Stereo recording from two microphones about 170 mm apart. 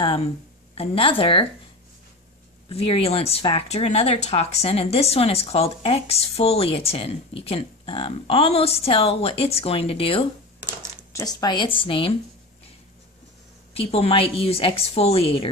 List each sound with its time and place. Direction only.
0.7 s speech: 30° left (ahead or behind)
2.7 s a woman's voice: 35° left (ahead or behind)
13.7 s speech: 35° left (ahead or behind)